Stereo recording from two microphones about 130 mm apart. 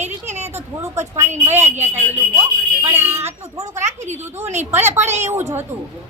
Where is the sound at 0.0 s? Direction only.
55° right (ahead or behind).